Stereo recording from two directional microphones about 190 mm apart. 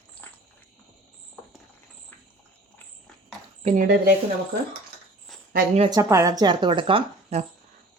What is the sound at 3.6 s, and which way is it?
Speech, 35° right (ahead or behind).